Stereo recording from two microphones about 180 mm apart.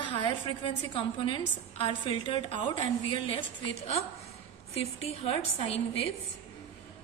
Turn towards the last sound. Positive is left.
turn(degrees=30)  # may be behind; listen again after turning